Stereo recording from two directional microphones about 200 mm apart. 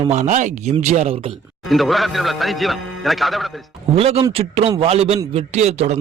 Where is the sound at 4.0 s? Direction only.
30° right (ahead or behind).